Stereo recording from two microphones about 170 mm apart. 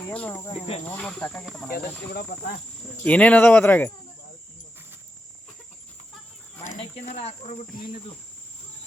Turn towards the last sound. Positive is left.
turn(degrees=40)  # may be behind; listen again after turning